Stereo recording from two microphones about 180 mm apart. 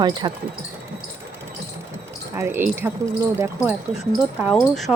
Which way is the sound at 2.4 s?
15° right (ahead or behind).